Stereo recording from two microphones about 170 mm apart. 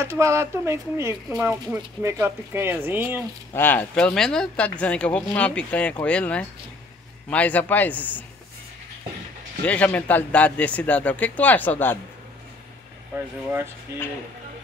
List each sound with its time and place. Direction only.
0.0 s speech: 15° right (ahead or behind)
3.5 s speech: 10° left (ahead or behind)
9.7 s speech: 10° left (ahead or behind)